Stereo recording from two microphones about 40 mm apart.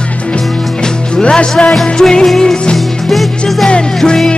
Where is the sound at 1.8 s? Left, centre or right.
Centre.